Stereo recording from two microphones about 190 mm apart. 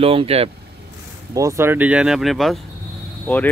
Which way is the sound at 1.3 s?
15° right (ahead or behind).